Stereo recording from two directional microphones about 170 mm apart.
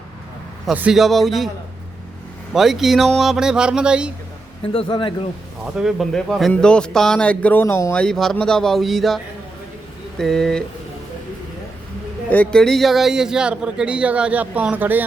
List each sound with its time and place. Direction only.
0.7 s a man's voice: 5° right (ahead or behind)
2.5 s a man's voice: centre (ahead or behind)
4.6 s a man's voice: 35° left (ahead or behind)
5.7 s a man's voice: centre (ahead or behind); by 7.9 s 15° left (ahead or behind)
7.9 s a man's voice: 5° left (ahead or behind)
12.3 s a man's voice: 5° left (ahead or behind); by 15.0 s 10° right (ahead or behind)